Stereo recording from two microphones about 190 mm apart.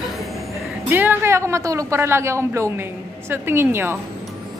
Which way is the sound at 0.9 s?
10° right (ahead or behind).